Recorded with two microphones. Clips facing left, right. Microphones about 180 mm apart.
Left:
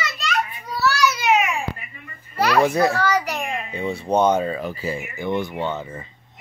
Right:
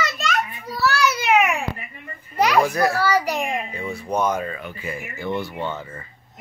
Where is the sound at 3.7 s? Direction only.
25° left (ahead or behind).